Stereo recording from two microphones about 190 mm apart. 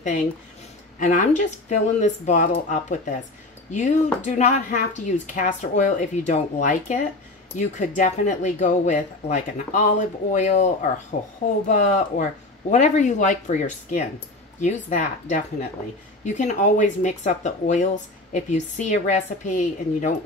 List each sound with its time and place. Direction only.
0.0 s speech: 40° left (ahead or behind)